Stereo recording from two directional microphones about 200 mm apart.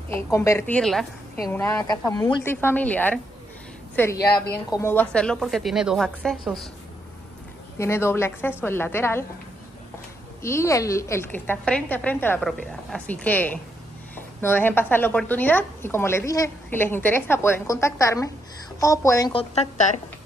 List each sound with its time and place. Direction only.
0.1 s a woman's voice: 15° left (ahead or behind)
7.8 s a woman's voice: 15° left (ahead or behind)
10.4 s a woman's voice: 15° left (ahead or behind)